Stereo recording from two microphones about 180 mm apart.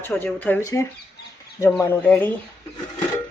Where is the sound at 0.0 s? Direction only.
10° left (ahead or behind).